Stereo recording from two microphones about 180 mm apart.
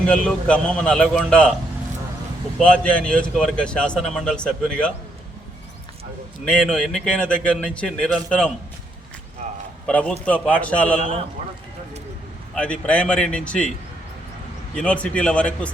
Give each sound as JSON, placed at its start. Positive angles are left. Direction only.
{"t": 0.1, "sound": "speech", "side_deg": 5}
{"t": 2.6, "sound": "speech", "side_deg": 5}
{"t": 6.4, "sound": "speech", "side_deg": 5}
{"t": 9.8, "sound": "a man's voice", "side_deg": 5}
{"t": 12.5, "sound": "a man's voice", "side_deg": 5}
{"t": 14.8, "sound": "a man's voice", "side_deg": 5}